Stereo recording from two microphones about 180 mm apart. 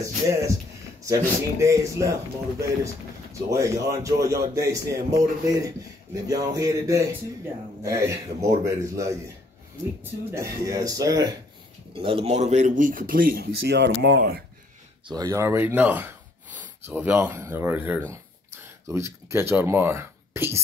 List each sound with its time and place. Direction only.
0.0 s a man's voice: 20° right (ahead or behind)
3.4 s a man's voice: 20° right (ahead or behind)
10.3 s a man's voice: 15° right (ahead or behind); by 14.4 s 75° right (ahead or behind)
15.0 s a man's voice: 20° right (ahead or behind)